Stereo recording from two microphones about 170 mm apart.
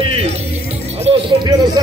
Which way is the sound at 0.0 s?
35° right (ahead or behind).